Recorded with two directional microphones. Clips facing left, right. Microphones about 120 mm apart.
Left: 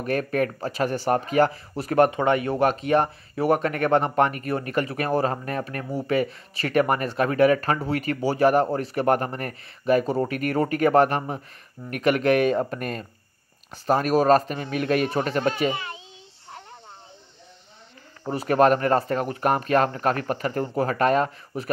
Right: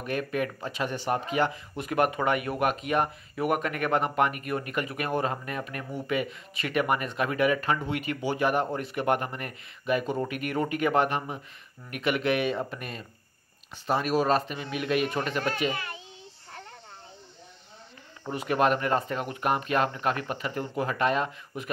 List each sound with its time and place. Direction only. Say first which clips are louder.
0.0 s a man's voice: left 5 dB; 40° left (ahead or behind)
15.7 s a child's voice: left 4 dB; 25° left (ahead or behind)
18.2 s speech: left 6 dB; 40° left (ahead or behind)